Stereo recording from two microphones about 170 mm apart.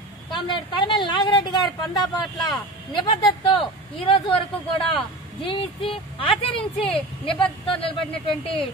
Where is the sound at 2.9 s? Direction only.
30° left (ahead or behind).